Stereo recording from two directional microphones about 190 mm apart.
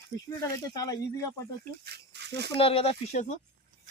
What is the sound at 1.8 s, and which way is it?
Speech, 60° right (ahead or behind).